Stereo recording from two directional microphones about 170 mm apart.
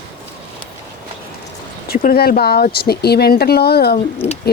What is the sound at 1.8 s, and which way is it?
Speech, 60° left (ahead or behind).